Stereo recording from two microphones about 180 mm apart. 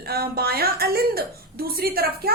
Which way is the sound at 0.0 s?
60° right (ahead or behind).